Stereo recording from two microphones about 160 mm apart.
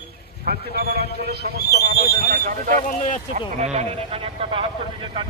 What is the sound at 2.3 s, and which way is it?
Speech, 60° right (ahead or behind).